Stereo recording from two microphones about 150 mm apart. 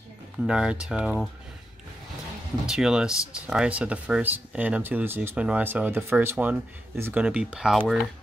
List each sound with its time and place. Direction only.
0.5 s speech: 5° right (ahead or behind)
2.7 s speech: 5° right (ahead or behind)